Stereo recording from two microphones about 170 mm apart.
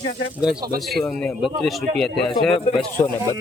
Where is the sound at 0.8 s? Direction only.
Centre (ahead or behind).